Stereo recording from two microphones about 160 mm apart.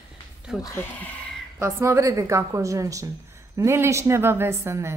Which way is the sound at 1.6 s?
15° right (ahead or behind).